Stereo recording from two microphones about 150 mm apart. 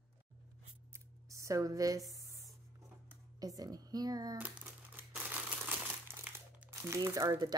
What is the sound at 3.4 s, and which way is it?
Speech, 25° right (ahead or behind).